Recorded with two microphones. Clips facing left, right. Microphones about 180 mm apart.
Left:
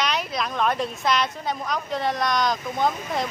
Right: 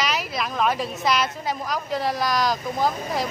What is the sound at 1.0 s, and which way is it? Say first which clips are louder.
A woman's voice: right 2 dB; centre (ahead or behind).